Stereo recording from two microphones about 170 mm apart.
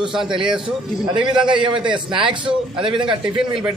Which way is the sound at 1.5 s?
30° right (ahead or behind).